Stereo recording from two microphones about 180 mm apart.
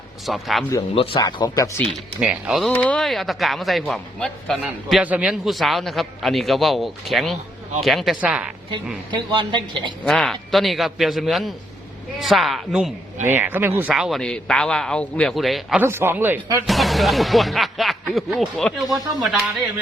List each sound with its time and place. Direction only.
0.3 s speech: centre (ahead or behind)
0.8 s speech: 25° left (ahead or behind)
1.9 s speech: 5° right (ahead or behind)
9.1 s a woman's voice: 25° right (ahead or behind)
10.0 s speech: centre (ahead or behind)
15.8 s speech: 15° right (ahead or behind)
16.6 s speech: centre (ahead or behind)